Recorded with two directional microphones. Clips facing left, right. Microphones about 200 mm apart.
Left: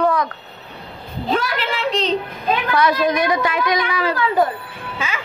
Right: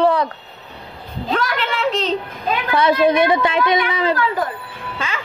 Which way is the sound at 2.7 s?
25° right (ahead or behind).